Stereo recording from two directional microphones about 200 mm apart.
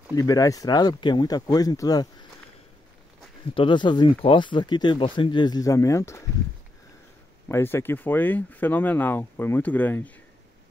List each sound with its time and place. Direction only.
0.1 s speech: 20° left (ahead or behind)
3.5 s speech: 25° left (ahead or behind)
7.4 s speech: 10° left (ahead or behind)